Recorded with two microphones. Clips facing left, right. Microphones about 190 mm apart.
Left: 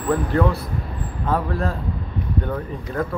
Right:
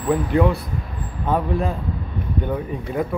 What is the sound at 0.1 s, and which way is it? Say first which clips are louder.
Speech: right 2 dB; 15° right (ahead or behind).